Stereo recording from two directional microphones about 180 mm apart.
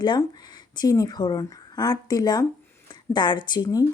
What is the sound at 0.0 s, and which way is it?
Speech, 25° left (ahead or behind).